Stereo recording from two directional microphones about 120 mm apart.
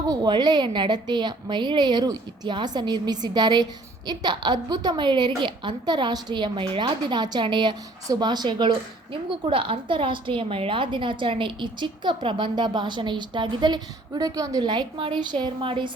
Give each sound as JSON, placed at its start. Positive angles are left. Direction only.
{"t": 0.1, "sound": "a woman's voice", "side_deg": -35}